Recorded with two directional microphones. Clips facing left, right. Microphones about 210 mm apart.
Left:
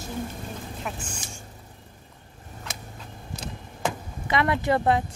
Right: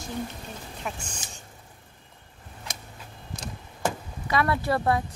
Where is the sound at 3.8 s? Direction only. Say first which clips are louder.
Even; 20° left (ahead or behind).